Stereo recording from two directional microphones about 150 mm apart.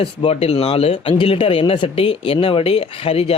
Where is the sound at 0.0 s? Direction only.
40° left (ahead or behind).